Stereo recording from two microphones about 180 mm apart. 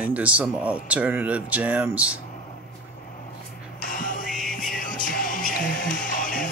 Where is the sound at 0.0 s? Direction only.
10° right (ahead or behind).